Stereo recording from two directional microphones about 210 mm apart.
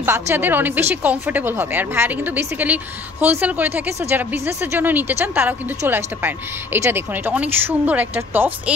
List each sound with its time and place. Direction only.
0.0 s a woman's voice: 10° right (ahead or behind)